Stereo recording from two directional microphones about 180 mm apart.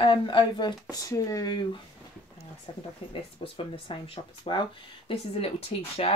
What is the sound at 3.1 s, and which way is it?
Speech, 30° left (ahead or behind).